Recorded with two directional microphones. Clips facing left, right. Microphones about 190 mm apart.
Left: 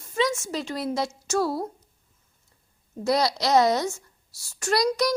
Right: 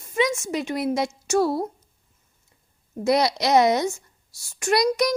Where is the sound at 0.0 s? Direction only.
15° right (ahead or behind).